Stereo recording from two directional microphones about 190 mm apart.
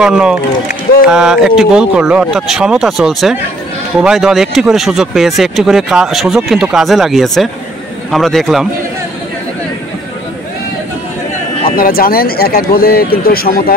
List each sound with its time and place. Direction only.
0.0 s speech: 5° right (ahead or behind)
11.7 s speech: 50° left (ahead or behind)